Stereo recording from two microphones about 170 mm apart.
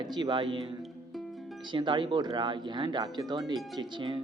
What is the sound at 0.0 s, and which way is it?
Speech, 25° right (ahead or behind).